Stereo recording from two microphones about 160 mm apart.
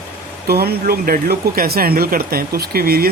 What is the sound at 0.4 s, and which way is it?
Speech, 75° right (ahead or behind).